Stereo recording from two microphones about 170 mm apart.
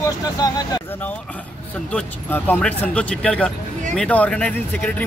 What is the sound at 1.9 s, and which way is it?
Speech, 5° left (ahead or behind).